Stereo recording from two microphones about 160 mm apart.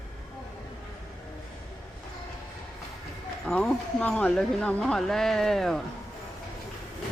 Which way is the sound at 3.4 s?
5° left (ahead or behind).